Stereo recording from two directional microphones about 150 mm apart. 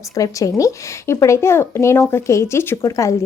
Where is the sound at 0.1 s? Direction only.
25° left (ahead or behind).